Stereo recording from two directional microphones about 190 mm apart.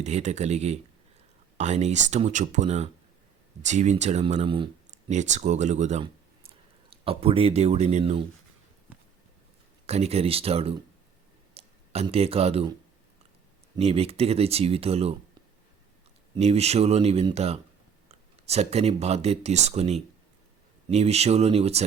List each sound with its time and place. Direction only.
0.0 s speech: 35° right (ahead or behind)
5.1 s speech: 40° right (ahead or behind)
9.8 s speech: 35° right (ahead or behind)
13.7 s speech: 30° right (ahead or behind)
16.3 s speech: 35° right (ahead or behind)